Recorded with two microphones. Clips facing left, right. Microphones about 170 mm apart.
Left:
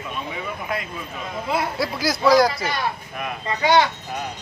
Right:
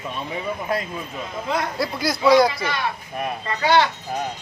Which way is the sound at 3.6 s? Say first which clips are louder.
Even; 15° left (ahead or behind).